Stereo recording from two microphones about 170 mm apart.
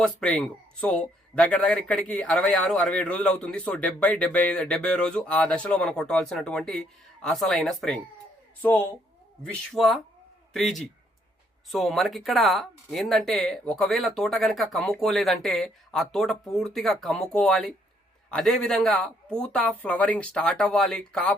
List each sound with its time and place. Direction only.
0.0 s speech: 5° left (ahead or behind)
9.4 s speech: 5° left (ahead or behind)